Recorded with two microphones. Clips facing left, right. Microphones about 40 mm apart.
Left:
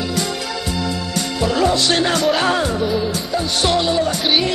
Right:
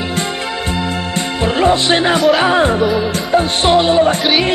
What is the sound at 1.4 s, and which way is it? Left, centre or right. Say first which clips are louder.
Music: right 4 dB; right.